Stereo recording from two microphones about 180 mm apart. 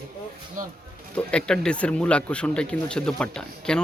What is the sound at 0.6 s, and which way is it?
Music, 45° right (ahead or behind).